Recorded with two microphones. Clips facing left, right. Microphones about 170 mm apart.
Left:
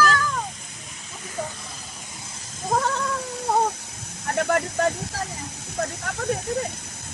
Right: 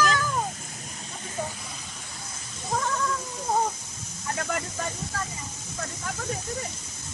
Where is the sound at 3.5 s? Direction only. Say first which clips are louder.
Left 3 dB; 70° left (ahead or behind).